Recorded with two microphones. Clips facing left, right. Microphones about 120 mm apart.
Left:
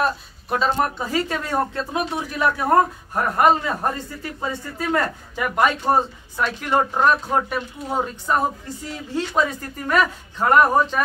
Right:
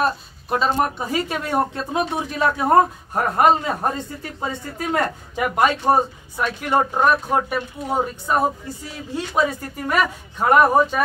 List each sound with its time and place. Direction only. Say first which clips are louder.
0.0 s speech: right 1 dB; 20° right (ahead or behind)